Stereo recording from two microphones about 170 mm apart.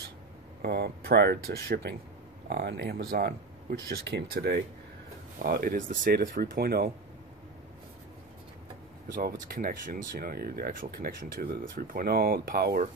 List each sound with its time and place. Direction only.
0.6 s speech: 70° right (ahead or behind)
5.4 s speech: 55° right (ahead or behind)
9.1 s speech: 55° right (ahead or behind)